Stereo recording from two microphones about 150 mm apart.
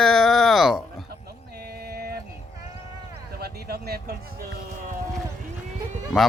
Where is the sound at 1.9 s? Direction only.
90° right.